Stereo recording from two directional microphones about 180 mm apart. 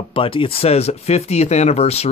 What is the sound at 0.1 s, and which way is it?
Speech, 30° left (ahead or behind).